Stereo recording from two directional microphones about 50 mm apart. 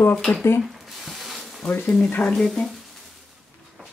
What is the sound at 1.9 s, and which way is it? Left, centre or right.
Speech, left.